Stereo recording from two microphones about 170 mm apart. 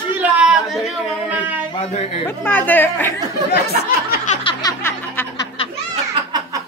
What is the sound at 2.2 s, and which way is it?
Speech, 10° left (ahead or behind).